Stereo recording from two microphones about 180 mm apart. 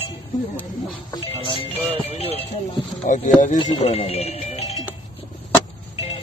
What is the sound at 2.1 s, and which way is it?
Speech, 35° left (ahead or behind).